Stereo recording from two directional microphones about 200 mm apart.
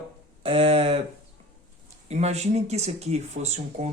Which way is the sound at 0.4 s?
30° right (ahead or behind).